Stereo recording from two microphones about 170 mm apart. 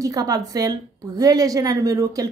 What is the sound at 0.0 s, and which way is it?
A woman's voice, 20° right (ahead or behind).